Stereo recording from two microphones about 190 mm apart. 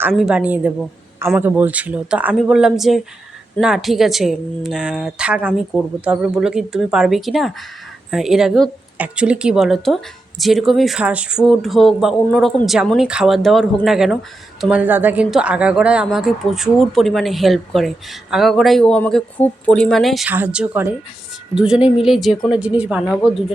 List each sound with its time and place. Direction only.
0.1 s a woman's voice: 5° right (ahead or behind)